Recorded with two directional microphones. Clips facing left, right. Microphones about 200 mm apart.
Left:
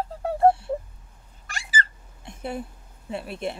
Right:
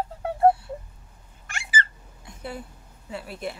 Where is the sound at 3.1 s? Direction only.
25° left (ahead or behind).